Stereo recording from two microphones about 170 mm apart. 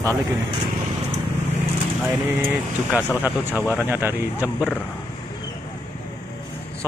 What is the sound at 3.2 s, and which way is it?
Speech, 10° right (ahead or behind).